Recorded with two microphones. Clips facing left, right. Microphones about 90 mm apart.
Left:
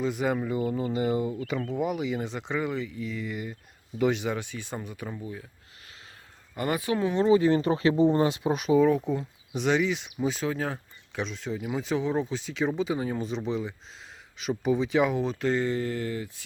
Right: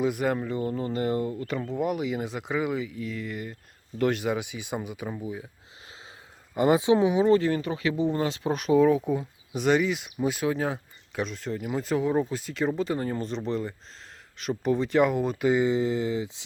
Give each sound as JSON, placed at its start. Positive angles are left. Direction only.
{"t": 0.0, "sound": "speech", "side_deg": -5}
{"t": 6.5, "sound": "speech", "side_deg": -20}
{"t": 7.3, "sound": "speech", "side_deg": 15}
{"t": 7.5, "sound": "speech", "side_deg": 35}
{"t": 8.4, "sound": "speech", "side_deg": 0}